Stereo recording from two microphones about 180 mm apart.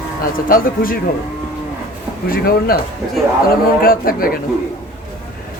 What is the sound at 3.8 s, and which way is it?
Speech, 50° left (ahead or behind).